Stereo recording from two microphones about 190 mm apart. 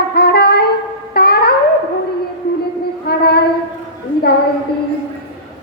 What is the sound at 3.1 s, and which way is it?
Child singing, 55° left (ahead or behind).